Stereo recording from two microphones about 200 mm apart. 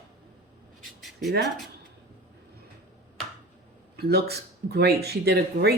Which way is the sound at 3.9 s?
55° right (ahead or behind).